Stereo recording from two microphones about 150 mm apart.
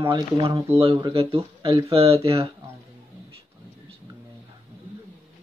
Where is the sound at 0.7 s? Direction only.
40° right (ahead or behind).